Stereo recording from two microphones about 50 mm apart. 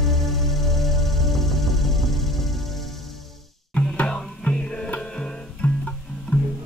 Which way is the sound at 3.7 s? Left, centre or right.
Left.